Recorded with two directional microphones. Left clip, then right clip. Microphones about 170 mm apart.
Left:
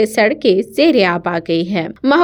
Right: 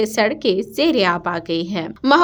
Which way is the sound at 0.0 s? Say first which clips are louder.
Left 5 dB; 20° left (ahead or behind).